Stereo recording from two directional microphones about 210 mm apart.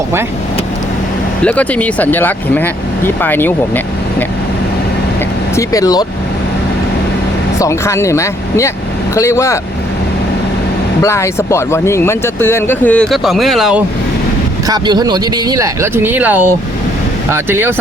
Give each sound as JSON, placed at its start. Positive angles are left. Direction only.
{"t": 1.4, "sound": "speech", "side_deg": 5}
{"t": 5.5, "sound": "speech", "side_deg": 15}
{"t": 7.6, "sound": "speech", "side_deg": 15}
{"t": 11.0, "sound": "speech", "side_deg": 15}
{"t": 14.7, "sound": "speech", "side_deg": -20}